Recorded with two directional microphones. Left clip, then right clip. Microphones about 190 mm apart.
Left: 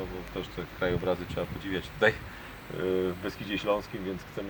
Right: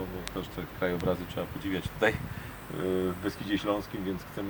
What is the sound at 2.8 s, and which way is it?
Speech, 40° left (ahead or behind).